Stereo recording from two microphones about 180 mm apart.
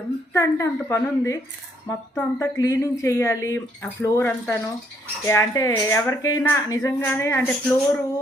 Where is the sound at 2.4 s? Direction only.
20° left (ahead or behind).